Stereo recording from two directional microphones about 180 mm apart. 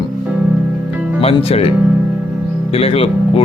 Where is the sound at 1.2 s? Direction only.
35° left (ahead or behind).